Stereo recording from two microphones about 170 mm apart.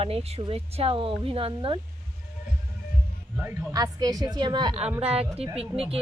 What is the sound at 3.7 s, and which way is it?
A woman's voice, 20° right (ahead or behind).